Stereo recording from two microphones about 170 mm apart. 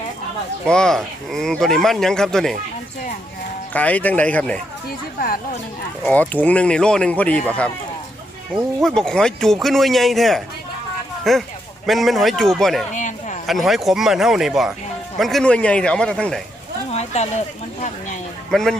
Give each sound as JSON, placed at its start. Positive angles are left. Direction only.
{"t": 0.7, "sound": "speech", "side_deg": 5}
{"t": 3.7, "sound": "speech", "side_deg": 10}
{"t": 6.1, "sound": "speech", "side_deg": 10}
{"t": 8.8, "sound": "speech", "side_deg": 5}
{"t": 12.9, "sound": "a sound", "side_deg": 50}
{"t": 13.5, "sound": "speech", "side_deg": 0}
{"t": 16.9, "sound": "speech", "side_deg": 40}
{"t": 18.5, "sound": "speech", "side_deg": 5}